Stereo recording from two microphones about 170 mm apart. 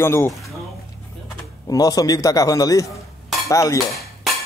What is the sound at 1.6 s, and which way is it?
Speech, 20° left (ahead or behind).